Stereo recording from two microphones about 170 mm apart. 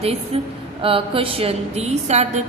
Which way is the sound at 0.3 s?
35° right (ahead or behind).